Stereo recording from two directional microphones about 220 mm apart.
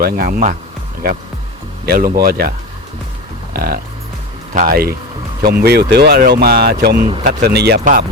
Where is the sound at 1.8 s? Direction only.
45° right (ahead or behind).